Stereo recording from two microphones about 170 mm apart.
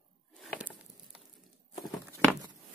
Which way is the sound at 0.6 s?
10° right (ahead or behind).